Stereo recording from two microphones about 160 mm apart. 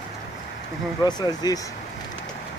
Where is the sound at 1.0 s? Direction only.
25° left (ahead or behind).